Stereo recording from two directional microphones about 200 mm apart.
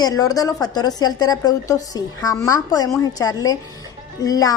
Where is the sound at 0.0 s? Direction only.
20° left (ahead or behind).